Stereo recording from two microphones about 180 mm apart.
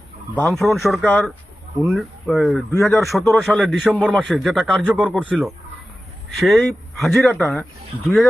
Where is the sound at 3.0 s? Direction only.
Centre (ahead or behind).